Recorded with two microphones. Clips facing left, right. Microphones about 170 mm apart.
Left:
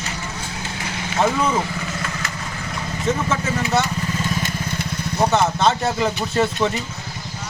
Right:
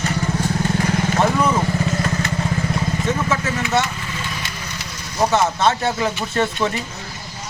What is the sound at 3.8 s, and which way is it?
Vehicle, 40° left (ahead or behind).